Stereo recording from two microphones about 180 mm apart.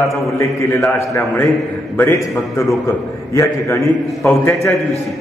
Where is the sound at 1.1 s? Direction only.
15° left (ahead or behind).